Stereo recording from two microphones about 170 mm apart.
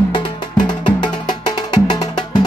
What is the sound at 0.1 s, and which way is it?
Music, 25° left (ahead or behind).